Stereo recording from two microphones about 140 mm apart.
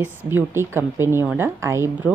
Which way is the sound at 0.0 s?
10° right (ahead or behind).